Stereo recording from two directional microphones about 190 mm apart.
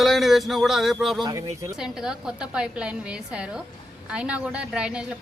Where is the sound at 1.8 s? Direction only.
5° right (ahead or behind).